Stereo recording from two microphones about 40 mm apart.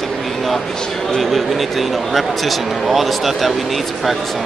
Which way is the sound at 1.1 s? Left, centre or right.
Centre.